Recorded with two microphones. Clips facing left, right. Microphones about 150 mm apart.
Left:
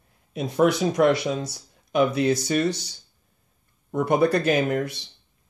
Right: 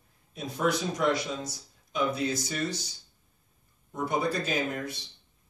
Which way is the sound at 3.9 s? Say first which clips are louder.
Left 9 dB; 70° left (ahead or behind).